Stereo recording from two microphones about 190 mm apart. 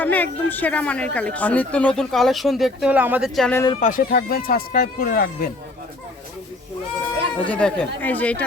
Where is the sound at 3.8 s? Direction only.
45° left (ahead or behind).